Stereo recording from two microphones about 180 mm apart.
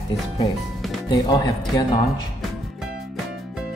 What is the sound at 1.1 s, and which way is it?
Speech, 20° left (ahead or behind).